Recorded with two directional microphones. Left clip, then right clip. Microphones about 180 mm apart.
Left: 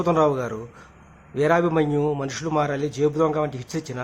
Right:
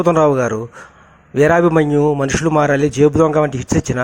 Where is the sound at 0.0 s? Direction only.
35° right (ahead or behind).